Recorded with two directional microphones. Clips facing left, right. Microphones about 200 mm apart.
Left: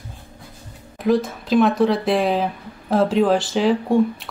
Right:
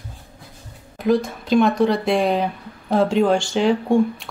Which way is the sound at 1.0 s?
Centre (ahead or behind).